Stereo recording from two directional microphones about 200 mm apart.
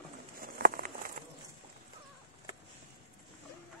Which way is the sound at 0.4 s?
50° right (ahead or behind).